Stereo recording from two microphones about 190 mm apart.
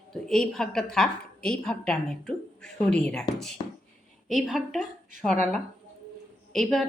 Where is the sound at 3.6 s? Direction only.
25° left (ahead or behind).